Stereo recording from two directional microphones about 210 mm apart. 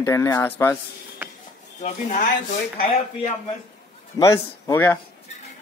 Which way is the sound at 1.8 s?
35° left (ahead or behind).